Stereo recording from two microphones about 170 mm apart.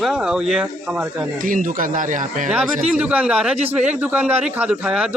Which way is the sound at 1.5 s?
50° right (ahead or behind).